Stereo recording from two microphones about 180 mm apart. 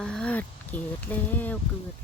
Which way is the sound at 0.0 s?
5° left (ahead or behind).